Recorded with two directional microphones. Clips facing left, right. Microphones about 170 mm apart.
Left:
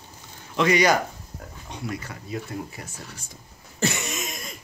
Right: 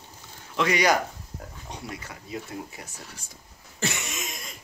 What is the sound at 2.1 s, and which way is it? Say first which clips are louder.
Speech: left 3 dB; 15° right (ahead or behind).